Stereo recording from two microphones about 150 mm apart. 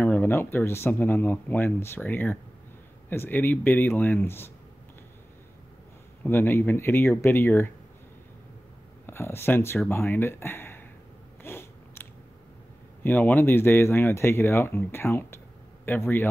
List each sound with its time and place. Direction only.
0.0 s speech: 15° left (ahead or behind)
6.2 s speech: 15° left (ahead or behind)
9.0 s speech: 15° left (ahead or behind)
11.4 s biting: 15° left (ahead or behind)
13.0 s speech: 10° left (ahead or behind)